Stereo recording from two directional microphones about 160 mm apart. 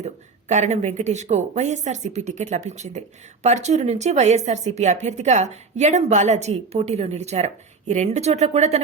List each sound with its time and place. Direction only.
0.0 s speech: 45° right (ahead or behind)